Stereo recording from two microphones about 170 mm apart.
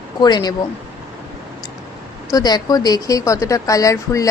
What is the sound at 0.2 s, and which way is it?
Speech, 25° left (ahead or behind).